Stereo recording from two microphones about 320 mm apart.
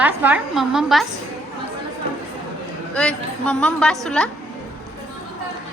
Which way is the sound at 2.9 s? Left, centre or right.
Centre.